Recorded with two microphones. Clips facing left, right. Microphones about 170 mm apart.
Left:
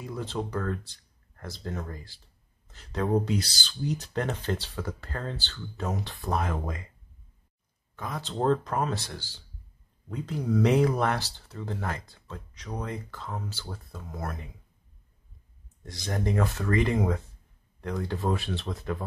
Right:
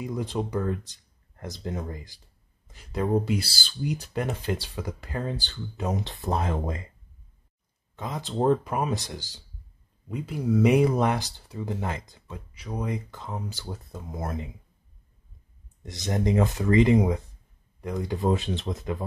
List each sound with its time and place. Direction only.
0.0 s speech: 15° right (ahead or behind)
7.9 s speech: 20° right (ahead or behind)
15.8 s speech: 20° right (ahead or behind)